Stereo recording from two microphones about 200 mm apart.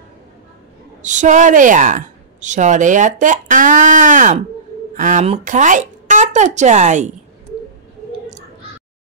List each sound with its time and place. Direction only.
1.0 s a woman's voice: 40° right (ahead or behind)